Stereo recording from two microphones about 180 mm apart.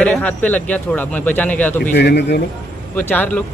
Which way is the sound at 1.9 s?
65° left (ahead or behind).